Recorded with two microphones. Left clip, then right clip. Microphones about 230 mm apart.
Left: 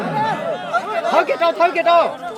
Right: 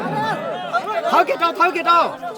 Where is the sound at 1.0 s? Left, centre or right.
Right.